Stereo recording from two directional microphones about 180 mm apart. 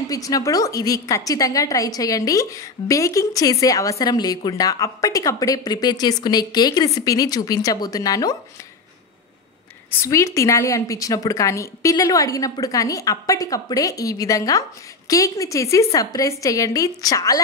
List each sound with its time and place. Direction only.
0.1 s a woman's voice: 20° left (ahead or behind)
9.8 s a woman's voice: 15° left (ahead or behind)